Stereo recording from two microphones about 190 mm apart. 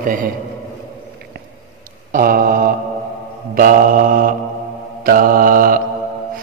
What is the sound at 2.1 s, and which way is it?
Mantra, 45° right (ahead or behind).